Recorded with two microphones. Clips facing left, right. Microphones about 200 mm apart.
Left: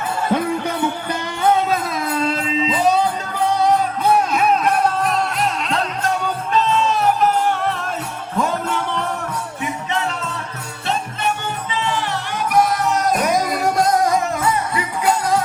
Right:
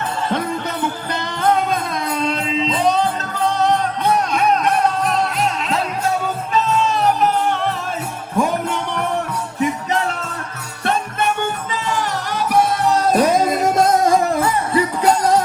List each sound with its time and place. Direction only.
0.3 s jingle bell: 10° left (ahead or behind)
1.1 s music: 5° left (ahead or behind)
8.4 s music: 15° right (ahead or behind)
10.8 s music: 50° right (ahead or behind); by 15.1 s 35° right (ahead or behind)